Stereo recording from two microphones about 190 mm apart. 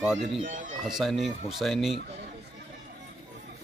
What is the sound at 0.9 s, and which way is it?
A man's voice, centre (ahead or behind).